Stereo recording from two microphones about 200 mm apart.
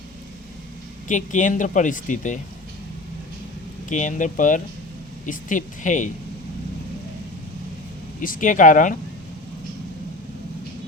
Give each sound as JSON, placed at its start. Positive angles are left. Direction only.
{"t": 1.0, "sound": "speech", "side_deg": 40}
{"t": 3.8, "sound": "speech", "side_deg": 40}
{"t": 8.2, "sound": "speech", "side_deg": 40}